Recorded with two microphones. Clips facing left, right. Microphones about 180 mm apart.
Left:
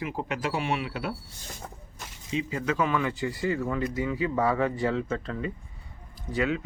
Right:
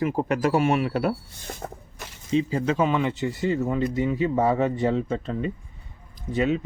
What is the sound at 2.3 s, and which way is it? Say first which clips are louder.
Speech: right 6 dB; 30° right (ahead or behind).